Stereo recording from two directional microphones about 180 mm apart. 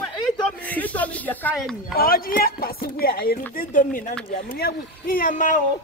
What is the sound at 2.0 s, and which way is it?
Speech, 55° left (ahead or behind).